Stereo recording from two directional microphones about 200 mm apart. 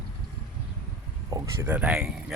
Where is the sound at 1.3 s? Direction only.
10° right (ahead or behind).